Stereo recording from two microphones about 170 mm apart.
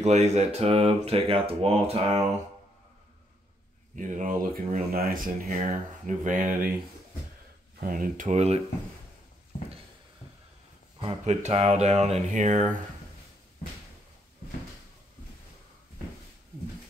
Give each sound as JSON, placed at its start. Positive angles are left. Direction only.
{"t": 0.0, "sound": "speech", "side_deg": -40}
{"t": 3.9, "sound": "speech", "side_deg": -50}
{"t": 7.8, "sound": "speech", "side_deg": -55}
{"t": 11.0, "sound": "speech", "side_deg": -35}